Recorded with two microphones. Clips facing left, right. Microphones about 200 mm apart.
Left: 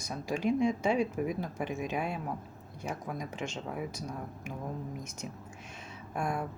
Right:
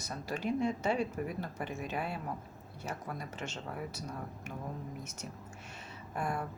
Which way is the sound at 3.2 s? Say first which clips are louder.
Left 4 dB; 10° left (ahead or behind).